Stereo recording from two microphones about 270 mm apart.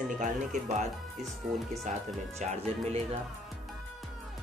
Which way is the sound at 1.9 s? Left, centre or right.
Right.